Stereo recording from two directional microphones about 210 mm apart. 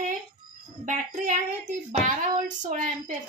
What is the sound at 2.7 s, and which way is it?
Speech, 35° right (ahead or behind).